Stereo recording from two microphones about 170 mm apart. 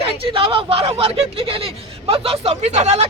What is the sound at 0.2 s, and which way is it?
Speech, 30° right (ahead or behind).